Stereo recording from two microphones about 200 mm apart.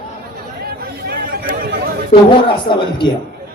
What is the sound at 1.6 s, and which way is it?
Chatter, 45° right (ahead or behind).